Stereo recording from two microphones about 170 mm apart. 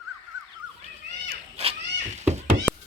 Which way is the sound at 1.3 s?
35° right (ahead or behind).